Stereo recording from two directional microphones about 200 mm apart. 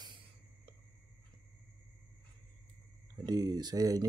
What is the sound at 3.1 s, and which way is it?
Speech, 20° right (ahead or behind).